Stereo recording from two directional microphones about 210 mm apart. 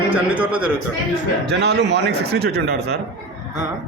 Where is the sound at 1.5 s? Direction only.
55° right (ahead or behind).